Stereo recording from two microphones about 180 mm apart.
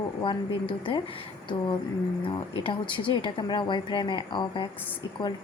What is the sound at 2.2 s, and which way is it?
Speech, 30° left (ahead or behind).